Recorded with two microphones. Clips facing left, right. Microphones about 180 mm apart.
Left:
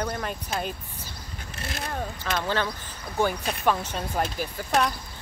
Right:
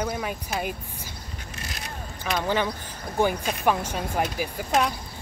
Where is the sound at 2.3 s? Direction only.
15° right (ahead or behind).